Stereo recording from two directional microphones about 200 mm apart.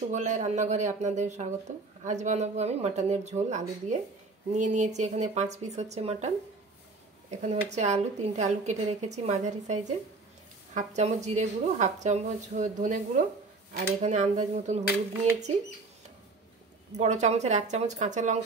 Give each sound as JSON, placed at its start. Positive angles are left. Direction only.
{"t": 0.1, "sound": "a woman's voice", "side_deg": -35}
{"t": 16.9, "sound": "a woman's voice", "side_deg": -35}